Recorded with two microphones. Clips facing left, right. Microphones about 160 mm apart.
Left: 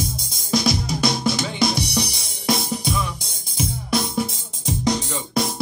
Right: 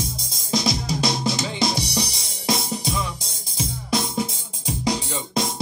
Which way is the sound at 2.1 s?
30° right (ahead or behind).